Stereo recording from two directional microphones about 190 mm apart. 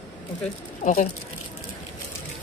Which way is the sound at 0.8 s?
40° left (ahead or behind).